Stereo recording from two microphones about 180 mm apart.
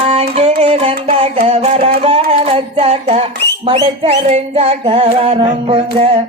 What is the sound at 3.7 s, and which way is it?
Music, 35° right (ahead or behind).